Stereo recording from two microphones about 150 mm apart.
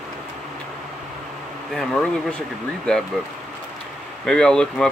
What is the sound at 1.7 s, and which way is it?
Speech, 5° left (ahead or behind).